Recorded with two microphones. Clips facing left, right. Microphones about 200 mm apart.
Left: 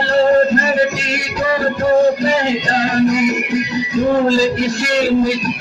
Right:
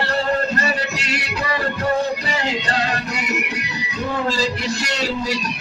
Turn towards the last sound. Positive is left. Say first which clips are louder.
# left 8 dB
turn(degrees=50)  # may be behind; listen again after turning